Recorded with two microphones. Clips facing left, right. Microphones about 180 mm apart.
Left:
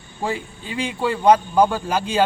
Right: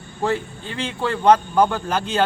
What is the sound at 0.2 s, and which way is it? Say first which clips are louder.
A man's voice: right 3 dB; 10° left (ahead or behind).